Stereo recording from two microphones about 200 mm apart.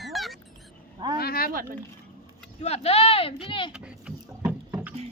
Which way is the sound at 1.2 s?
50° left (ahead or behind).